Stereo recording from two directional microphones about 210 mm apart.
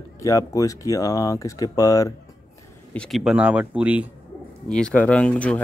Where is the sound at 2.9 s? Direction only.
Centre (ahead or behind).